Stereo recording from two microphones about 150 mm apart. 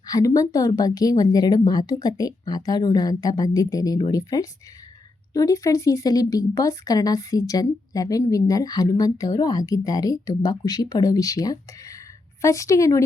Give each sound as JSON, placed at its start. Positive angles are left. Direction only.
{"t": 0.1, "sound": "speech", "side_deg": 25}